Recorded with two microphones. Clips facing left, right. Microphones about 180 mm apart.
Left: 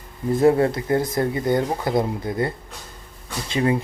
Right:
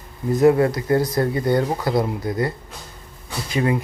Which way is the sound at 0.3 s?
25° left (ahead or behind).